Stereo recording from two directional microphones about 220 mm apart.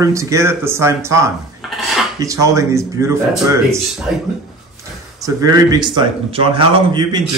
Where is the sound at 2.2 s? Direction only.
15° right (ahead or behind).